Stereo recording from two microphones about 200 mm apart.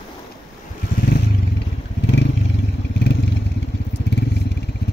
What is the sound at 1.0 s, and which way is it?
Vehicle, 50° left (ahead or behind).